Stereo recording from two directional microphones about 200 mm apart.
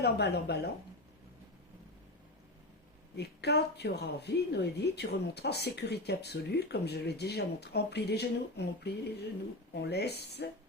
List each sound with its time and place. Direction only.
0.0 s speech: 55° left (ahead or behind)
3.2 s speech: 55° left (ahead or behind)